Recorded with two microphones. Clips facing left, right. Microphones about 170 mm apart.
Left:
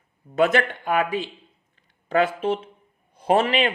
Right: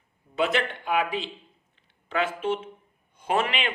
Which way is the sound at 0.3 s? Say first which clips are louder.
Left 6 dB; 45° left (ahead or behind).